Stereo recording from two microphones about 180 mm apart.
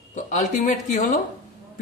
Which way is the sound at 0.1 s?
45° left (ahead or behind).